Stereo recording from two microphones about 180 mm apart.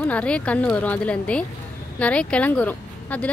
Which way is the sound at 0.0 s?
5° left (ahead or behind).